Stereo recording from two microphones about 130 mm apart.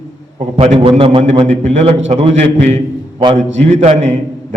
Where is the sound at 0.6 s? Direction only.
50° right (ahead or behind).